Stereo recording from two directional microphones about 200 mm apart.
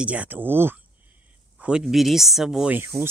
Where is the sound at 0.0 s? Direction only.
5° right (ahead or behind).